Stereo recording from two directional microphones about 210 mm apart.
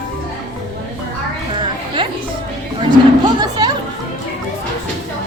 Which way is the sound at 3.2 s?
20° right (ahead or behind).